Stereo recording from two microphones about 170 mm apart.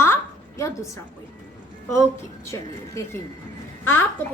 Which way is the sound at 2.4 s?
15° left (ahead or behind).